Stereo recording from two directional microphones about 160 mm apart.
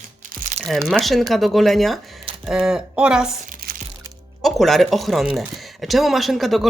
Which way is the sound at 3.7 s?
65° right (ahead or behind).